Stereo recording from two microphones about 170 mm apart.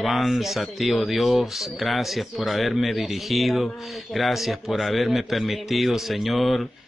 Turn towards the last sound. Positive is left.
turn(degrees=0)  # may be behind; listen again after turning